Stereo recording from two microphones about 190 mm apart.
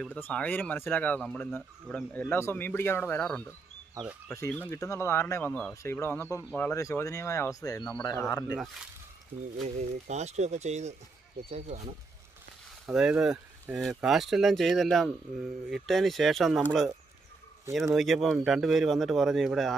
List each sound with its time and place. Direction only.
0.0 s speech: 5° left (ahead or behind)
9.8 s speech: 35° right (ahead or behind)
12.8 s speech: 5° right (ahead or behind)
17.9 s speech: centre (ahead or behind)